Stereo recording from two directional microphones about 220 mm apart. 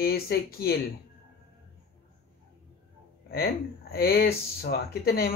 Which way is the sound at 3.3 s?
45° left (ahead or behind).